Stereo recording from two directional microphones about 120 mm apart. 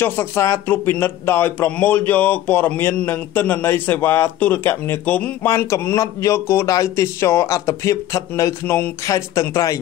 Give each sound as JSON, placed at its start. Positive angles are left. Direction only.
{"t": 0.0, "sound": "speech", "side_deg": 20}